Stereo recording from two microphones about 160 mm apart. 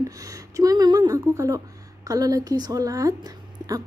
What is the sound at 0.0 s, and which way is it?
A woman's voice, 20° right (ahead or behind).